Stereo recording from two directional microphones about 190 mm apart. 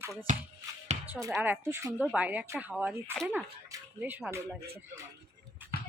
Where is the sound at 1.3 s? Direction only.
10° right (ahead or behind).